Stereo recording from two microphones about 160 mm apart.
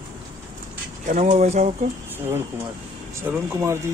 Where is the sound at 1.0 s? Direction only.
50° right (ahead or behind).